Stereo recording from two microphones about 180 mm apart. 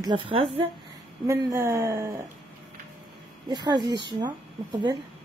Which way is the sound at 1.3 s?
15° right (ahead or behind).